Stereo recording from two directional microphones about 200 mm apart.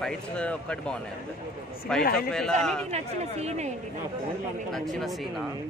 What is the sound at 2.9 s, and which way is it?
Speech, 35° right (ahead or behind).